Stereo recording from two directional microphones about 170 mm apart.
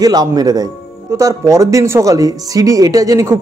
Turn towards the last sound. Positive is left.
turn(degrees=-20)  # may be behind; listen again after turning